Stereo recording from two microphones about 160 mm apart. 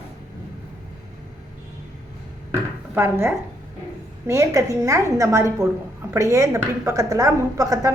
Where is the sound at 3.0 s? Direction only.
15° right (ahead or behind).